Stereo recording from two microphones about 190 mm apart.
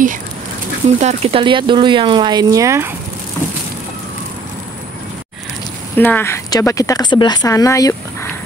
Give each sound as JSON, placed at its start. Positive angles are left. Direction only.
{"t": 0.8, "sound": "speech", "side_deg": -35}
{"t": 5.9, "sound": "speech", "side_deg": 10}